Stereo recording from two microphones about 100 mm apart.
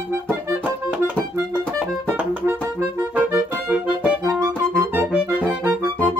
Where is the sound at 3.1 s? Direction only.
15° right (ahead or behind).